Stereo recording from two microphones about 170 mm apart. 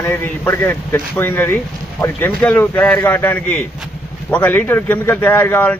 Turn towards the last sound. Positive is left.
turn(degrees=10)  # may be behind; listen again after turning